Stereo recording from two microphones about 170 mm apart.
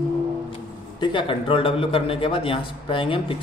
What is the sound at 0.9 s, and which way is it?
Speech, 30° left (ahead or behind).